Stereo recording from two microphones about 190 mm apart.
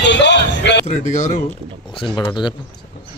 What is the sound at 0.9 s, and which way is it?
Speech, 40° left (ahead or behind).